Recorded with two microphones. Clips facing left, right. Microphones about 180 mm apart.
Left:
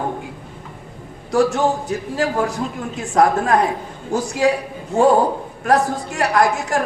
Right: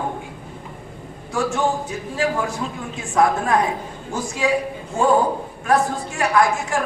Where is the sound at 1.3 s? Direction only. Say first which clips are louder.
Left 5 dB; 40° left (ahead or behind).